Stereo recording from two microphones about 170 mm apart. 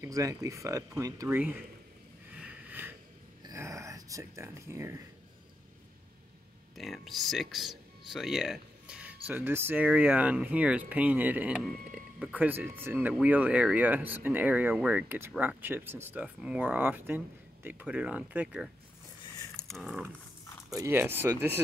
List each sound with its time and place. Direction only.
0.0 s speech: 20° right (ahead or behind)
2.3 s sniff: 10° right (ahead or behind)
3.4 s speech: 20° right (ahead or behind)
6.8 s speech: centre (ahead or behind)
19.7 s dog: centre (ahead or behind)
20.7 s speech: 15° right (ahead or behind)